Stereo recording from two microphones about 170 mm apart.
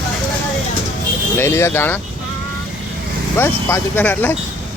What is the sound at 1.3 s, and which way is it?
Speech, 15° left (ahead or behind).